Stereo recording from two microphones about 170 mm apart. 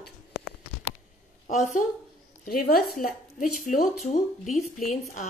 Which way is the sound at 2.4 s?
60° left (ahead or behind).